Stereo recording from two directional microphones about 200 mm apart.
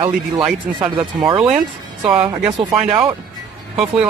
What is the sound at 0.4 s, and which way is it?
Speech, 25° right (ahead or behind).